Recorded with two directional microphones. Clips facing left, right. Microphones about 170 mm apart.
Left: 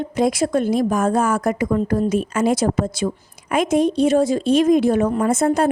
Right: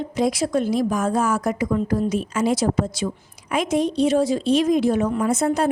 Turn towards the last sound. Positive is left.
turn(degrees=50)  # may be behind; listen again after turning